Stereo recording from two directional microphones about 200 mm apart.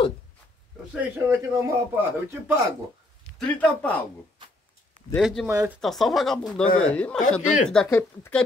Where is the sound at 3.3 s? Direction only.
5° left (ahead or behind).